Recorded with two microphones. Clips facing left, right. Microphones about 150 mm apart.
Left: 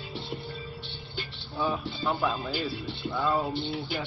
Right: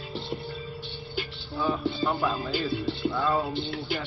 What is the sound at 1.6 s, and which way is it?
Speech, centre (ahead or behind).